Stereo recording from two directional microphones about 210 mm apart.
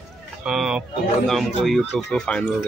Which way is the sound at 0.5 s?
Centre (ahead or behind).